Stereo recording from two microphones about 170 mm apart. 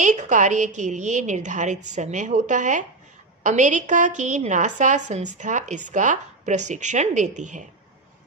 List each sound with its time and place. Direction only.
0.0 s a woman's voice: 45° right (ahead or behind)